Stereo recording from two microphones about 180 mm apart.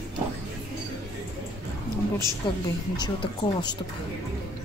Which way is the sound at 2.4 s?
25° left (ahead or behind).